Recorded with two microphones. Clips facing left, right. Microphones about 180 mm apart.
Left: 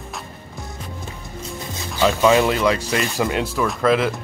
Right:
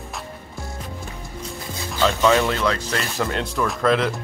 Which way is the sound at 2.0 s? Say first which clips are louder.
Left 2 dB; 15° left (ahead or behind).